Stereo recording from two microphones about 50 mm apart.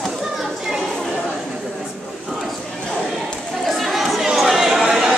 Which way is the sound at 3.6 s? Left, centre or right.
Centre.